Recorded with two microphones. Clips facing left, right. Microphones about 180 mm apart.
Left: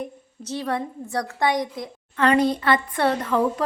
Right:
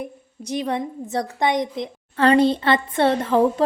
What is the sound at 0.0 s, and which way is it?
A woman's voice, 15° right (ahead or behind).